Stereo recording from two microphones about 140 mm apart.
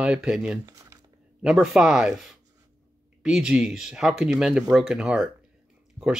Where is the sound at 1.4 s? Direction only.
5° right (ahead or behind).